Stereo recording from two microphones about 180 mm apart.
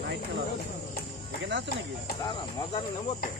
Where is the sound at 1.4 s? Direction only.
85° right.